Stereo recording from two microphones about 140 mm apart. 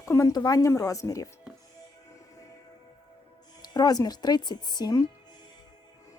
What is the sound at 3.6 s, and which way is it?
Speech, 30° left (ahead or behind).